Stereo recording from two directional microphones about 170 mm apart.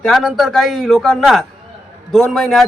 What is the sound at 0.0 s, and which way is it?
A man's voice, centre (ahead or behind).